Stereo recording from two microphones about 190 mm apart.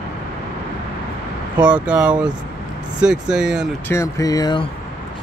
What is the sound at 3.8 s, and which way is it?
Speech, 15° left (ahead or behind).